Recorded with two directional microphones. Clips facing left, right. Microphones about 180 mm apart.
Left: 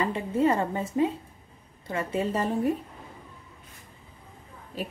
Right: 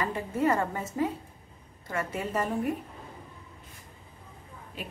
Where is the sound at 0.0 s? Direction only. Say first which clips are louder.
Left 3 dB; 25° left (ahead or behind).